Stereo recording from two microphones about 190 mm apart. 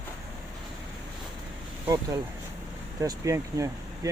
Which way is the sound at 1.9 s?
20° right (ahead or behind).